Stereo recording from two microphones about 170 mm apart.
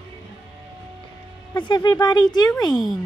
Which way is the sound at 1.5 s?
25° left (ahead or behind).